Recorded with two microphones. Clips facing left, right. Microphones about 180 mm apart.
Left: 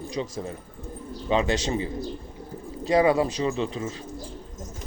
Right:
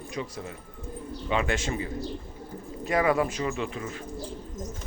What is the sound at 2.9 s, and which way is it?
Speech, 30° left (ahead or behind).